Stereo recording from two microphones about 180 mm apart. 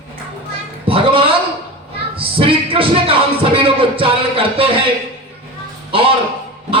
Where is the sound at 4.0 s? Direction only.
30° right (ahead or behind).